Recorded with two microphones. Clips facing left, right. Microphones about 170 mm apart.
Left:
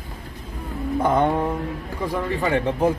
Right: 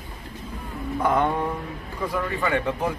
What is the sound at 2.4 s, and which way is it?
Speech, 30° left (ahead or behind).